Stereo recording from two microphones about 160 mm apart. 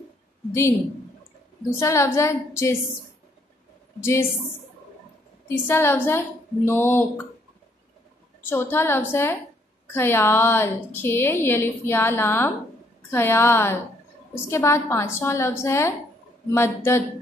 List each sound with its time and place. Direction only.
1.8 s a woman's voice: 15° left (ahead or behind)
4.0 s a woman's voice: 15° left (ahead or behind)
5.7 s a woman's voice: 15° left (ahead or behind)
8.5 s a woman's voice: 15° left (ahead or behind)